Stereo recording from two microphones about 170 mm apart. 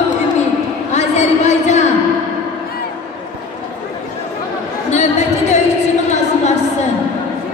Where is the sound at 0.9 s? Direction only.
40° left (ahead or behind).